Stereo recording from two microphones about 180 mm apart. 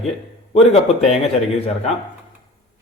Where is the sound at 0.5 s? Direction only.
35° left (ahead or behind).